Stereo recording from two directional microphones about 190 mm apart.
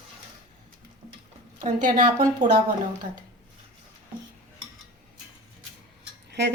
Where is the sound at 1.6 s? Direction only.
40° right (ahead or behind).